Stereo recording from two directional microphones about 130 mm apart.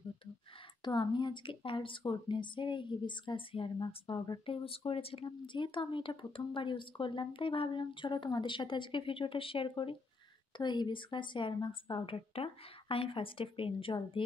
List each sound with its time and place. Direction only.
0.8 s speech: 35° left (ahead or behind)